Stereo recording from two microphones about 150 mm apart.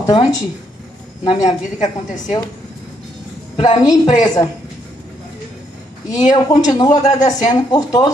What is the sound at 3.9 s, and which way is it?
Speech, 55° left (ahead or behind).